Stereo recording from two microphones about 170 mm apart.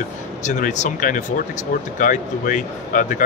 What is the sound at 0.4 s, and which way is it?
Speech, 45° left (ahead or behind).